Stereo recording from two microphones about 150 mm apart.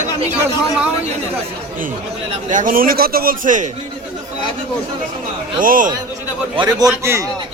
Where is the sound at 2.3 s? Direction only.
60° right (ahead or behind).